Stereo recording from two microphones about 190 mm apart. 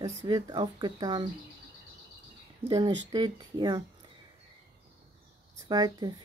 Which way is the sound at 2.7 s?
20° right (ahead or behind).